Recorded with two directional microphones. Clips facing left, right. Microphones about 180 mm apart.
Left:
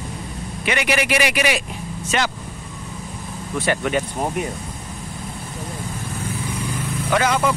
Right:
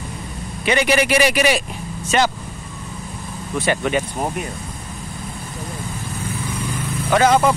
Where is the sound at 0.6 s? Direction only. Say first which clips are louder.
Right 4 dB; 35° right (ahead or behind).